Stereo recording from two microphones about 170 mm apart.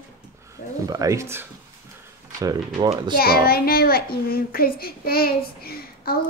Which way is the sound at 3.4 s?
65° left (ahead or behind).